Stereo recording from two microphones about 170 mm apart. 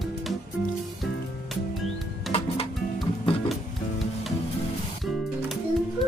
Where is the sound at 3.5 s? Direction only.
Centre (ahead or behind).